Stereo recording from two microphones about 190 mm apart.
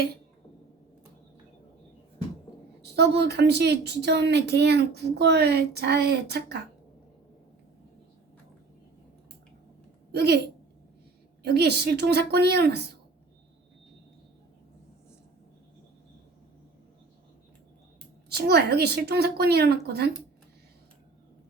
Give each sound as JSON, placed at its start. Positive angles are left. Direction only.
{"t": 2.8, "sound": "a woman's voice", "side_deg": -60}
{"t": 10.1, "sound": "speech", "side_deg": -60}
{"t": 11.4, "sound": "a woman's voice", "side_deg": -60}
{"t": 18.3, "sound": "a woman's voice", "side_deg": -55}